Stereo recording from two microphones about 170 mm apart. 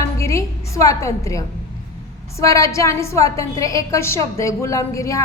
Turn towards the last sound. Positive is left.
turn(degrees=20)  # may be behind; listen again after turning